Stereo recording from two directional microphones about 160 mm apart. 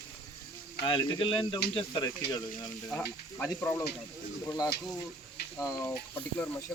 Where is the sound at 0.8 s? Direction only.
30° left (ahead or behind).